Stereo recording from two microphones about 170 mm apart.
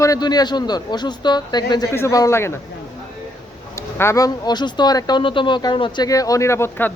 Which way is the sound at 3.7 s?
15° left (ahead or behind).